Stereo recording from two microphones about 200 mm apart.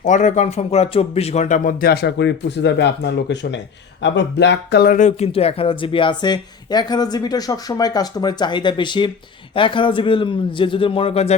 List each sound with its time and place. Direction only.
0.0 s a man's voice: 40° left (ahead or behind)